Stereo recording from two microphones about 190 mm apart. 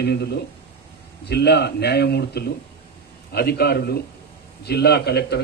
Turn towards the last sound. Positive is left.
turn(degrees=60)  # may be behind; listen again after turning